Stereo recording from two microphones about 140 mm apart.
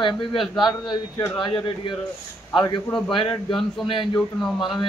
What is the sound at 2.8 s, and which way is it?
Speech, 5° left (ahead or behind).